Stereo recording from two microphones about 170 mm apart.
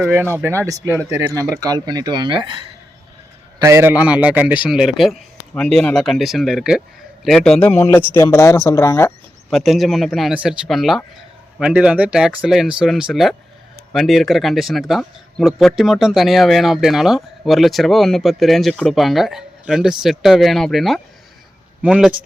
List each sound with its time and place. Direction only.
0.0 s speech: 10° right (ahead or behind); by 2.6 s 30° right (ahead or behind)
3.6 s speech: 15° right (ahead or behind); by 9.1 s 15° left (ahead or behind)
9.5 s speech: centre (ahead or behind)